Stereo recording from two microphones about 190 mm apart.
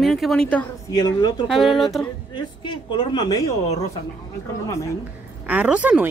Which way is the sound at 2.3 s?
25° left (ahead or behind).